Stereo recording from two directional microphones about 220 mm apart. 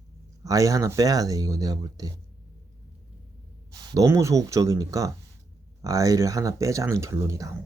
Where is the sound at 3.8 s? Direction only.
15° right (ahead or behind).